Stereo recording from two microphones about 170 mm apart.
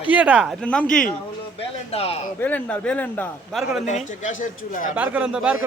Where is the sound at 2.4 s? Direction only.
10° left (ahead or behind).